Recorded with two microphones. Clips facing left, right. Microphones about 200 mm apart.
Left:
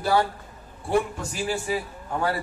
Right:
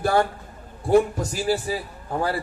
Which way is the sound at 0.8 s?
40° right (ahead or behind).